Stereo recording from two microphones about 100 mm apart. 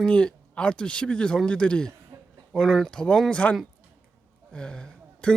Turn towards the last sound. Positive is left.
turn(degrees=5)  # may be behind; listen again after turning